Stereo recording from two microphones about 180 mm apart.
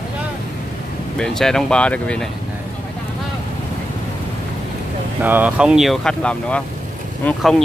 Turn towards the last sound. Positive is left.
turn(degrees=5)  # may be behind; listen again after turning